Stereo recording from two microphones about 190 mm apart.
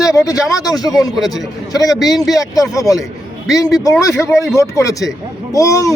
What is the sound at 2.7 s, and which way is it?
Speech, 15° left (ahead or behind).